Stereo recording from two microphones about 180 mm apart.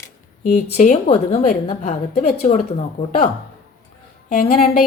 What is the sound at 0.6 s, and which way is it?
A woman's voice, 40° left (ahead or behind).